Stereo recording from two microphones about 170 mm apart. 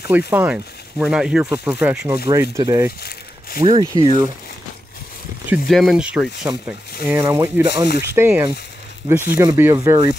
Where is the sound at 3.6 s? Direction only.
30° right (ahead or behind).